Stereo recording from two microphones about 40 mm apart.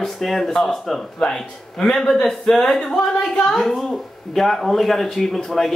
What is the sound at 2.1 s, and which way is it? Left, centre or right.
Speech, centre.